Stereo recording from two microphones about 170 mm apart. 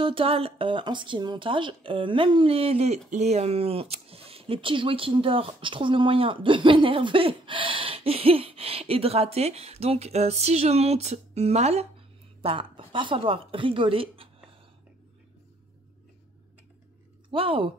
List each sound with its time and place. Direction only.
0.0 s speech: 30° right (ahead or behind)
17.3 s a woman's voice: 30° right (ahead or behind)